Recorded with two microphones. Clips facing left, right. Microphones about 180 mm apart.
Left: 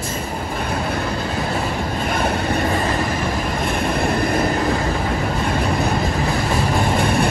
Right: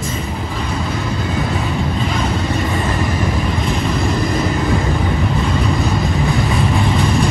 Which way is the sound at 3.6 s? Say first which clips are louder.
Left 1 dB; 60° left (ahead or behind).